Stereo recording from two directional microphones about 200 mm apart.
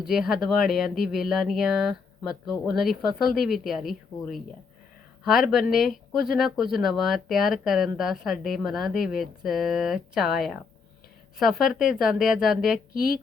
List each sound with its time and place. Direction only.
0.1 s speech: centre (ahead or behind)